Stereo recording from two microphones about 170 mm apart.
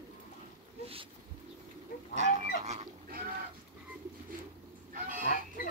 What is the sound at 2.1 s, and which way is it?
Livestock, 40° right (ahead or behind).